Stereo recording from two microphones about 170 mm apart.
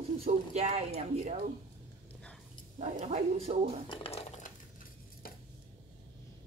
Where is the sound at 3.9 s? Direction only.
35° left (ahead or behind).